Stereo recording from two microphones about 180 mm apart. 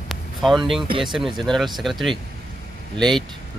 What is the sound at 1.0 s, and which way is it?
Speech, centre (ahead or behind).